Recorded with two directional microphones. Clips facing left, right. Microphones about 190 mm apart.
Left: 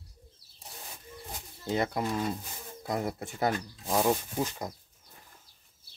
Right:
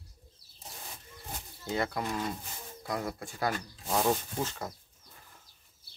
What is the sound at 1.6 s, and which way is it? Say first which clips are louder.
Speech: left 3 dB; 20° left (ahead or behind).